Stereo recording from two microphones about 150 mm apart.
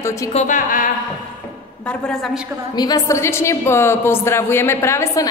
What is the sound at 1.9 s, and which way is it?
Speech, 5° left (ahead or behind).